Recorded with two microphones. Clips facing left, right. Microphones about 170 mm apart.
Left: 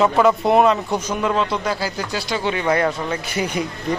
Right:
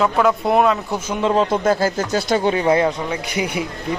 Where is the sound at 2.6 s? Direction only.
25° right (ahead or behind).